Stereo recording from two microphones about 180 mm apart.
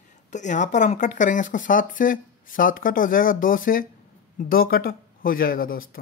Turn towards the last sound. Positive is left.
turn(degrees=50)  # may be behind; listen again after turning